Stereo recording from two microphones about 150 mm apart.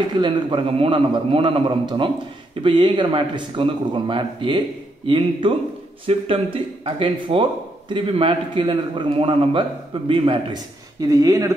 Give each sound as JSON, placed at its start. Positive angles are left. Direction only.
{"t": 0.2, "sound": "a man's voice", "side_deg": -35}
{"t": 11.0, "sound": "speech", "side_deg": -25}